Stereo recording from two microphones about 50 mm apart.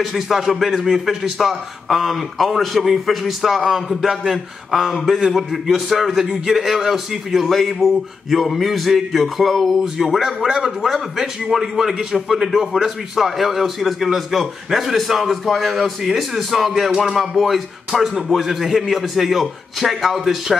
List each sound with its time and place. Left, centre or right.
0.0 s a man's voice: centre